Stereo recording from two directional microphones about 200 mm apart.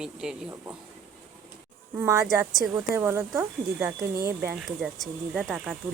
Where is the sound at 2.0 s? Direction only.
15° right (ahead or behind).